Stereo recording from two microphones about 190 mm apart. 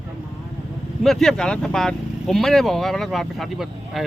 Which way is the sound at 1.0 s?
Centre (ahead or behind).